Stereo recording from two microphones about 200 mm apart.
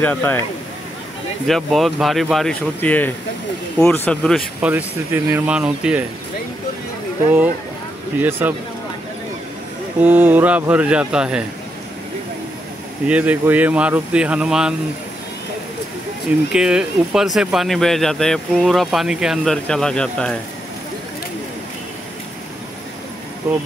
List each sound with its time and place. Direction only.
0.0 s speech: 10° left (ahead or behind)
1.5 s speech: centre (ahead or behind)
4.6 s speech: 10° right (ahead or behind)
8.2 s speech: 10° right (ahead or behind)
10.0 s speech: 10° right (ahead or behind)
13.0 s speech: 5° right (ahead or behind)
16.5 s speech: 5° right (ahead or behind)